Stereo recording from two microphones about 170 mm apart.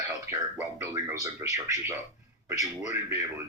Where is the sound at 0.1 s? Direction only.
20° right (ahead or behind).